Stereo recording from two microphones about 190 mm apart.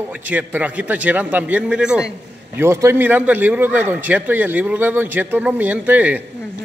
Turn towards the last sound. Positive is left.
turn(degrees=-10)  # may be behind; listen again after turning